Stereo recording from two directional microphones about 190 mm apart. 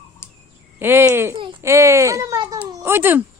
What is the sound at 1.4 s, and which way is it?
Baby cry, 25° right (ahead or behind).